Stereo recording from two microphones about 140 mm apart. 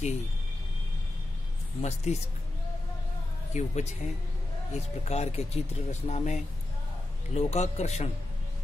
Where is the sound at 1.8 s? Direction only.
55° left (ahead or behind).